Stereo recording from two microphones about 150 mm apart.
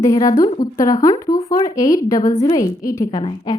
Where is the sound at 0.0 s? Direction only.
20° left (ahead or behind).